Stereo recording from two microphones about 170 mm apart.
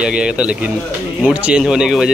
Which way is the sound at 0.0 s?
5° right (ahead or behind).